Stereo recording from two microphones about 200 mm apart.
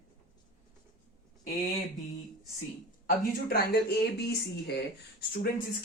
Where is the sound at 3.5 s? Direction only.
50° left (ahead or behind).